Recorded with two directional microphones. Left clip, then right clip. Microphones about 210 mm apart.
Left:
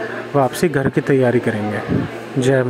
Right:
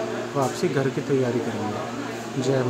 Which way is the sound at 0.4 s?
35° left (ahead or behind).